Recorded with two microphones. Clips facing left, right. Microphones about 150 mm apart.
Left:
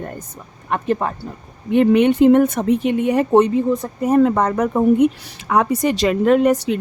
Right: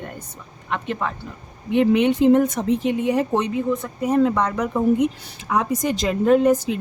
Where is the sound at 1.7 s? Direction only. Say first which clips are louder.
Left 4 dB; 55° left (ahead or behind).